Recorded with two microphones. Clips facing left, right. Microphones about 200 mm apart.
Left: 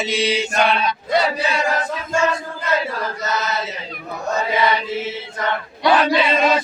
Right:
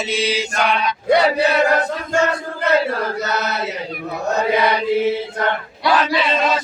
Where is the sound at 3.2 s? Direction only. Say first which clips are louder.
Right 2 dB; 65° right (ahead or behind).